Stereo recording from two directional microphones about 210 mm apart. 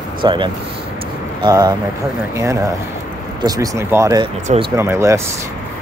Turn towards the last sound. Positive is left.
turn(degrees=-15)  # may be behind; listen again after turning